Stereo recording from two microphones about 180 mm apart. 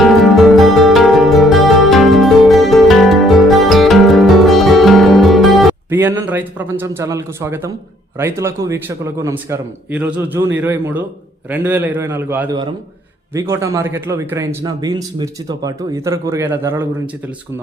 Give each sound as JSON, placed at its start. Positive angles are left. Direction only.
{"t": 0.5, "sound": "music", "side_deg": 0}
{"t": 5.9, "sound": "a man's voice", "side_deg": -15}